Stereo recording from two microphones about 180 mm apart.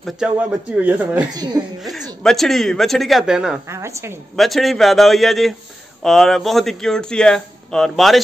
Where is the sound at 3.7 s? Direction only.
15° right (ahead or behind).